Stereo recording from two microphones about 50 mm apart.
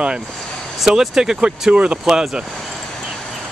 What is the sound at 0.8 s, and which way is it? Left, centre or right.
Speech, centre.